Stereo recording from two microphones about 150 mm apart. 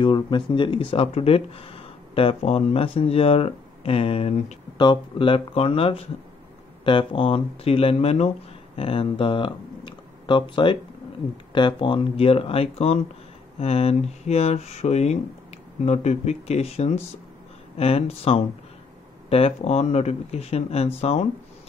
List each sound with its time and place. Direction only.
0.0 s speech: 35° left (ahead or behind)
4.7 s speech: 30° left (ahead or behind)